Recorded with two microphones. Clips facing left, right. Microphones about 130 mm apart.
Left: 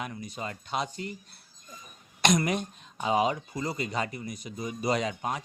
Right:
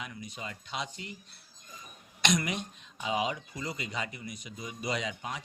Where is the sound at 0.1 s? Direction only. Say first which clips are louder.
Left 5 dB; 40° left (ahead or behind).